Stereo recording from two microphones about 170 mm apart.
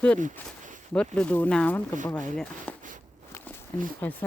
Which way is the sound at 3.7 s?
10° left (ahead or behind).